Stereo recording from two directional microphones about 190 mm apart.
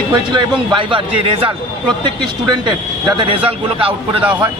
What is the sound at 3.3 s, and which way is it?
Speech, 30° right (ahead or behind).